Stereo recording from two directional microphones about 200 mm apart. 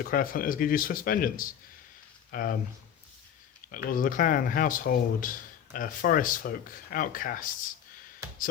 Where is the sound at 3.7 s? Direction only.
45° left (ahead or behind).